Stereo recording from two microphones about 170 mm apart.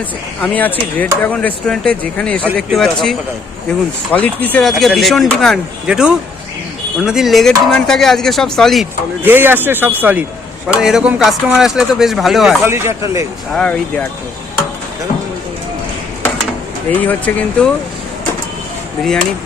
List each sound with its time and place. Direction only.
0.4 s speech: 10° left (ahead or behind)
9.2 s speech: 10° right (ahead or behind)
12.6 s speech: 15° right (ahead or behind)
13.5 s speech: 5° left (ahead or behind)
17.0 s speech: 10° left (ahead or behind)